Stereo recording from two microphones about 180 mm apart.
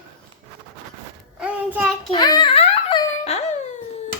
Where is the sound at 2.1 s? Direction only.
20° left (ahead or behind).